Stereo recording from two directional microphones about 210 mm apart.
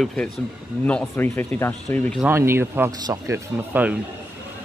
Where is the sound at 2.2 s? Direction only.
10° right (ahead or behind).